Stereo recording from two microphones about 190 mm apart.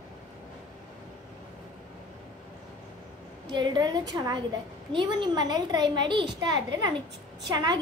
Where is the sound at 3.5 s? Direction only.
25° right (ahead or behind).